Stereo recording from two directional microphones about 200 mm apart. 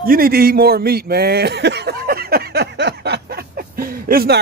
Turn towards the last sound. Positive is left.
turn(degrees=-45)  # may be behind; listen again after turning